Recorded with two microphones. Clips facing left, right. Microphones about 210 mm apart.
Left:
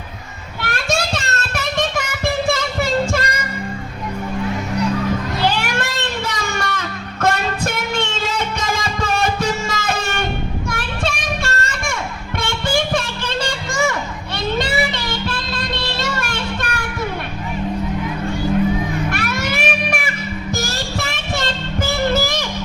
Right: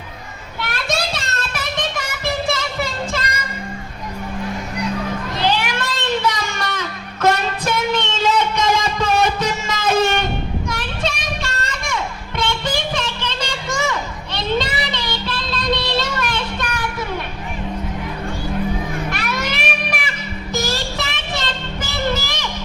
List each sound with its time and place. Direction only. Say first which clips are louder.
0.6 s child singing: left 2 dB; 50° left (ahead or behind)
2.2 s music: left 2 dB; 50° left (ahead or behind)
5.5 s music: right 3 dB; 50° left (ahead or behind)
19.1 s music: left 2 dB; 50° left (ahead or behind)